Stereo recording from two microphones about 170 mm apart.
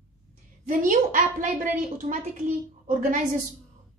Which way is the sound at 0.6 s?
50° right (ahead or behind).